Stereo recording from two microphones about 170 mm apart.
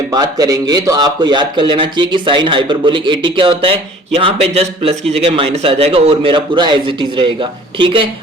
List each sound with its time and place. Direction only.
0.1 s speech: 25° right (ahead or behind)